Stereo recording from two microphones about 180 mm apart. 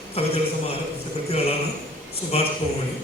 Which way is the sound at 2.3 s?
35° left (ahead or behind).